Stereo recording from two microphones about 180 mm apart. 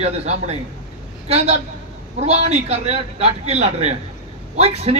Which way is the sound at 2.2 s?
35° right (ahead or behind).